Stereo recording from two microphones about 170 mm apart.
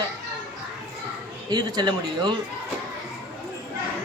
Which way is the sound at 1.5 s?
25° right (ahead or behind).